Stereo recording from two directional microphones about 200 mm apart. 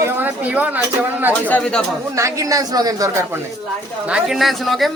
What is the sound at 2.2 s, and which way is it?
A woman's voice, 15° right (ahead or behind).